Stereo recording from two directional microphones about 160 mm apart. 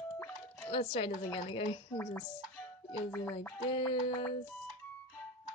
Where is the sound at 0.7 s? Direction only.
35° left (ahead or behind).